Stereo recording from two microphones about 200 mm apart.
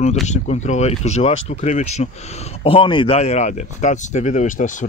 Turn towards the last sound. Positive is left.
turn(degrees=40)  # may be behind; listen again after turning